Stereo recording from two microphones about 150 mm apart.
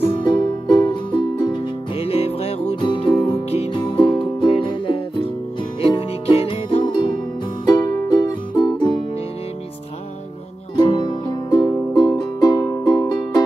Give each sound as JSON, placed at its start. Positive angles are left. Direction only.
{"t": 0.1, "sound": "music", "side_deg": 30}
{"t": 10.8, "sound": "music", "side_deg": 30}